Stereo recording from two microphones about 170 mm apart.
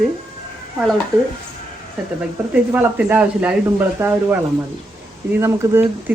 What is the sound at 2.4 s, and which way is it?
Speech, 15° right (ahead or behind).